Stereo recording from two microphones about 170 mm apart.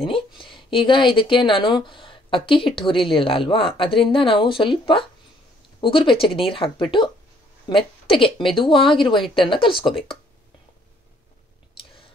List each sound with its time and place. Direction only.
0.4 s speech: 30° left (ahead or behind)